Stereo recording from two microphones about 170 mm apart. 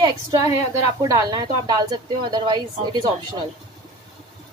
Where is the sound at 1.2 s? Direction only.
25° right (ahead or behind).